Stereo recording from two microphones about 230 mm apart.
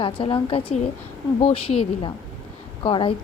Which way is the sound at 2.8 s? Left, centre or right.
Left.